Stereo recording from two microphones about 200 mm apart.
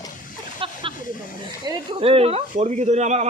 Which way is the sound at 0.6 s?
25° right (ahead or behind).